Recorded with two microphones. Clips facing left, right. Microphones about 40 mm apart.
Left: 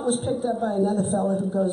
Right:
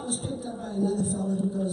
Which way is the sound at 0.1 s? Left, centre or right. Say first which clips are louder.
Left 11 dB; left.